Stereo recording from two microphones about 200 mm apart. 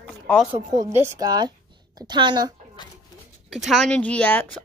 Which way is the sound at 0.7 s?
15° right (ahead or behind).